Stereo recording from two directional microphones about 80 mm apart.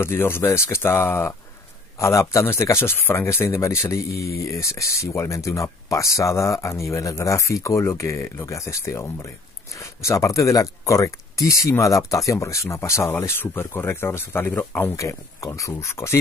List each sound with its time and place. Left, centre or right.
0.0 s speech: left
15.0 s speech: left